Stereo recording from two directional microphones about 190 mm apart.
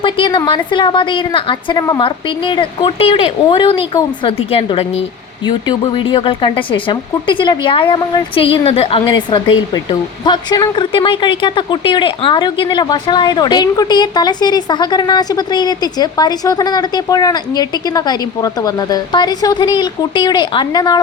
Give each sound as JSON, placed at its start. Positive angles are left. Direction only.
{"t": 0.0, "sound": "speech", "side_deg": 25}